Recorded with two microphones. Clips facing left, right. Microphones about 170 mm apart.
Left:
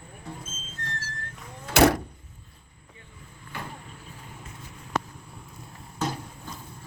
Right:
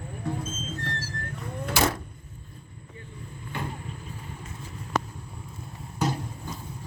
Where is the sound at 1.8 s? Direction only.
75° left (ahead or behind).